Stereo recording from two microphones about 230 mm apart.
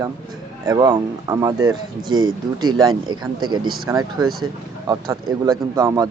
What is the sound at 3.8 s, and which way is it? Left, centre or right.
Speech, centre.